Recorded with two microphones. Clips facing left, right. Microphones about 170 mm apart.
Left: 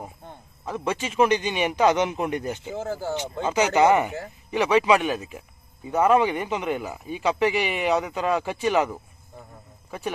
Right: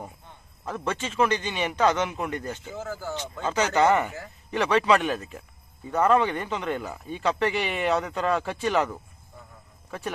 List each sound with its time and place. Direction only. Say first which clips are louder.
0.6 s speech: left 2 dB; centre (ahead or behind)
1.0 s speech: left 4 dB; 15° left (ahead or behind)